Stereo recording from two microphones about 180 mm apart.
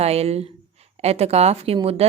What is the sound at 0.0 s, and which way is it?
A woman's voice, 35° right (ahead or behind).